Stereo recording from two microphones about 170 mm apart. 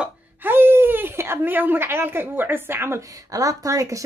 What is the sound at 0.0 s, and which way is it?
Speech, 10° right (ahead or behind).